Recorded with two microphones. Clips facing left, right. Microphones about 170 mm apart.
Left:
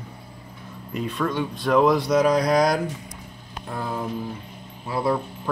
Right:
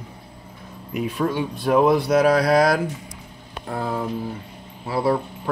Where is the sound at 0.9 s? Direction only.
10° right (ahead or behind).